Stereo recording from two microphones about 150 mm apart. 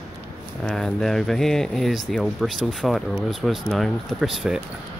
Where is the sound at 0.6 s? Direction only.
5° left (ahead or behind).